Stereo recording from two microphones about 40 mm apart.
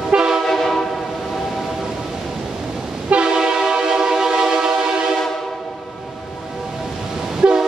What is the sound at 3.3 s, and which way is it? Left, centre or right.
Train, centre.